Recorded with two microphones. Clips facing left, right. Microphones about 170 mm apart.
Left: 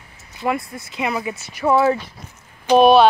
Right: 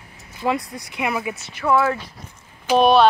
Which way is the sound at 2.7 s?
5° left (ahead or behind).